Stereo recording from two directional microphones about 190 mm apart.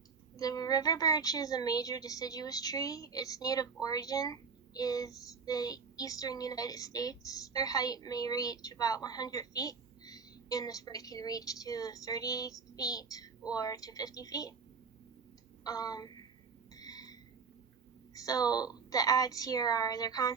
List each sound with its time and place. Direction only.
0.3 s a woman's voice: 20° left (ahead or behind)
15.6 s a woman's voice: 20° left (ahead or behind)
16.7 s a sound: 20° left (ahead or behind)
18.1 s a woman's voice: 20° left (ahead or behind)